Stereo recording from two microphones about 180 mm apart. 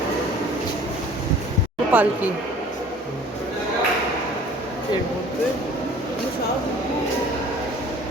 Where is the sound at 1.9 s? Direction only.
10° right (ahead or behind).